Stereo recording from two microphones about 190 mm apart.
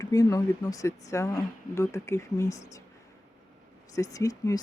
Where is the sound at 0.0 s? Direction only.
20° left (ahead or behind).